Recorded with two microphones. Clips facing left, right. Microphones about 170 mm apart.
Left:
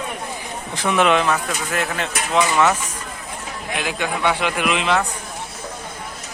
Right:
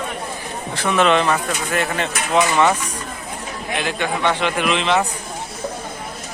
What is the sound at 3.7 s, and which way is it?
Speech, 5° left (ahead or behind).